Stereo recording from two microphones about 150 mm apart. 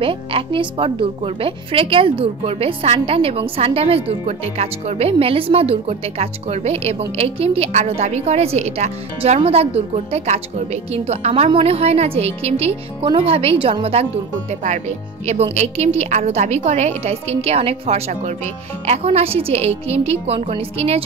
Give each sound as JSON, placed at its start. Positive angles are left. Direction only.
{"t": 0.0, "sound": "a woman's voice", "side_deg": -35}
{"t": 14.5, "sound": "speech", "side_deg": -50}